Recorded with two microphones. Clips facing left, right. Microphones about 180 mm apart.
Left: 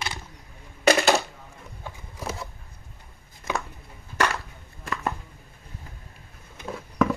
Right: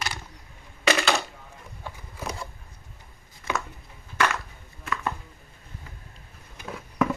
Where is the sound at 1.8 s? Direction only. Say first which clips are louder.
Even; 15° left (ahead or behind).